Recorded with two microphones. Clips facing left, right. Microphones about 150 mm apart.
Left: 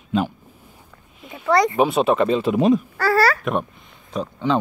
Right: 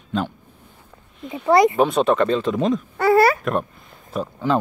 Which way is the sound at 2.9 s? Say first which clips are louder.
Right 3 dB; 20° right (ahead or behind).